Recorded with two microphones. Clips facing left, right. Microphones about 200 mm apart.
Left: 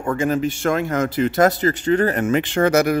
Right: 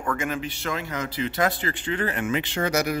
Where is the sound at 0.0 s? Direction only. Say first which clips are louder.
Left 8 dB; 30° left (ahead or behind).